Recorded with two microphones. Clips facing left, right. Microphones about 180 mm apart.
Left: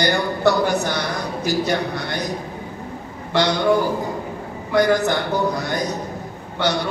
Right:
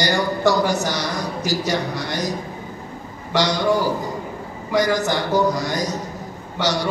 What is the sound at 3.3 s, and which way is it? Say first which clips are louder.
Speech: left 1 dB; 60° left (ahead or behind).